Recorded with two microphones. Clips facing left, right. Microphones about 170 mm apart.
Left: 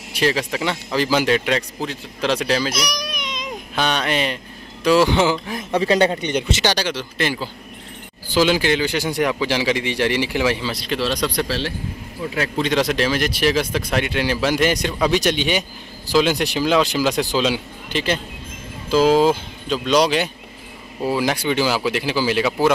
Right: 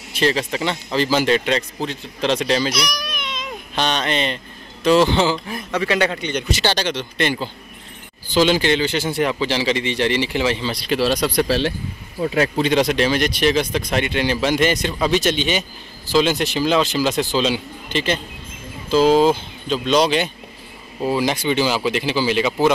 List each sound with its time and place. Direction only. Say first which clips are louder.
0.1 s a man's voice: right 1 dB; 10° left (ahead or behind)
2.9 s a sound: left 1 dB; 15° left (ahead or behind)
3.7 s a man's voice: even; 10° left (ahead or behind)
5.8 s a man's voice: left 3 dB; 25° left (ahead or behind); by 10.8 s 10° left (ahead or behind)
10.9 s speech: right 4 dB; 5° right (ahead or behind)
12.8 s a man's voice: right 2 dB; centre (ahead or behind)